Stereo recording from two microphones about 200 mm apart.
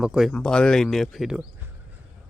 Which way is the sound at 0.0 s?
Centre (ahead or behind).